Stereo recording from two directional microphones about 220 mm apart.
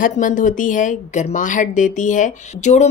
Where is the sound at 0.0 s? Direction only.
35° left (ahead or behind).